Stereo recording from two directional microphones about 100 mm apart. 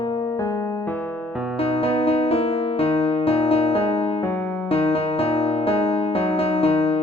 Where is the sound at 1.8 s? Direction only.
70° left (ahead or behind).